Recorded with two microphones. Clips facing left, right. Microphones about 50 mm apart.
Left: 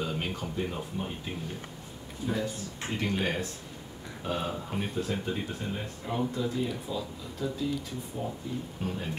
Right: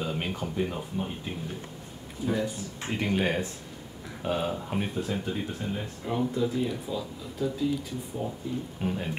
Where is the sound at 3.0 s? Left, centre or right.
Centre.